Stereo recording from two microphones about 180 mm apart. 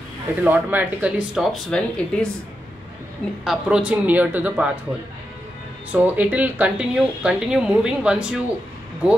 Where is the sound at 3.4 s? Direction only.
5° right (ahead or behind).